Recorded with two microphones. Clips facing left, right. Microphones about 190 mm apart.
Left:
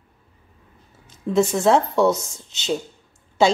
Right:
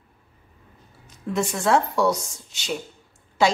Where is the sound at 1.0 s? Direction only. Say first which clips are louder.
Left 6 dB; 25° left (ahead or behind).